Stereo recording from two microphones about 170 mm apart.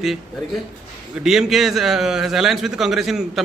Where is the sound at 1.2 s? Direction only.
Centre (ahead or behind).